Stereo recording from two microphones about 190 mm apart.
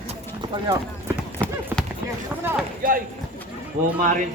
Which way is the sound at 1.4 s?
5° left (ahead or behind).